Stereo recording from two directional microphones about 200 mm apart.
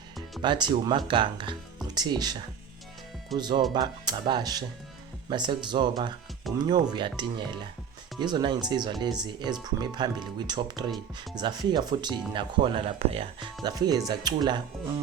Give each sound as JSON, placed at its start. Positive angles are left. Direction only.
{"t": 0.4, "sound": "speech", "side_deg": -25}
{"t": 6.5, "sound": "speech", "side_deg": 0}
{"t": 6.9, "sound": "speech", "side_deg": -20}